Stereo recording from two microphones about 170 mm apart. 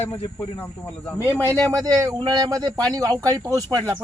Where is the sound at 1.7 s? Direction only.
20° right (ahead or behind).